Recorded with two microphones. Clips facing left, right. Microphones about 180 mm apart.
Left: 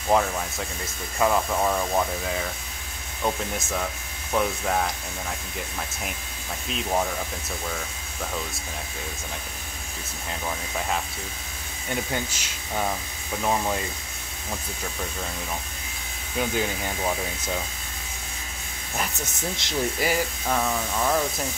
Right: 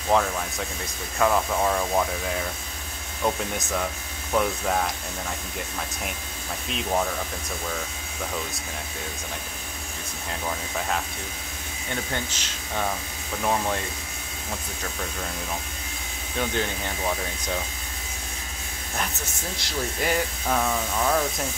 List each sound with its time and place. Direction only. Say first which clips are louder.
0.1 s speech: even; 5° left (ahead or behind)
11.9 s speech: left 2 dB; 10° left (ahead or behind)
16.3 s speech: left 1 dB; 5° left (ahead or behind)
19.6 s speech: left 3 dB; 20° left (ahead or behind)
20.0 s speech: even; 5° left (ahead or behind)